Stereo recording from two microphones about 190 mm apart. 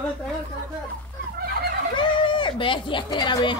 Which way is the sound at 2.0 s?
25° left (ahead or behind).